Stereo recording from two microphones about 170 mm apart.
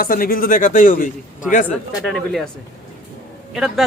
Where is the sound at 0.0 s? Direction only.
60° left (ahead or behind).